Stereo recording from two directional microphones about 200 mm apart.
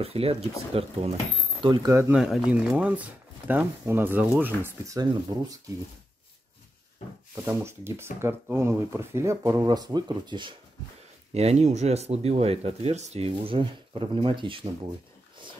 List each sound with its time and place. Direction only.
0.0 s speech: 30° right (ahead or behind); by 2.1 s 15° right (ahead or behind)
2.1 s speech: centre (ahead or behind)
7.3 s speech: 15° right (ahead or behind)
11.3 s speech: 35° right (ahead or behind)